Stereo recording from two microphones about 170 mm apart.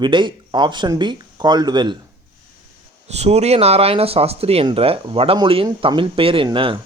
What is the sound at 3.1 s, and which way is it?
Speech, 40° right (ahead or behind).